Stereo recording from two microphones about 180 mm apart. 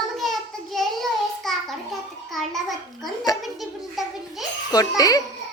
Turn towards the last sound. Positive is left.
turn(degrees=20)  # may be behind; listen again after turning